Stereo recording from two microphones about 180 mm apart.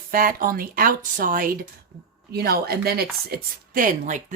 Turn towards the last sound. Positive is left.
turn(degrees=-45)  # may be behind; listen again after turning